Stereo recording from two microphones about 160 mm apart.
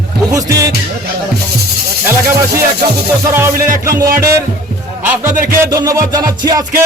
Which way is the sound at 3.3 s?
15° right (ahead or behind).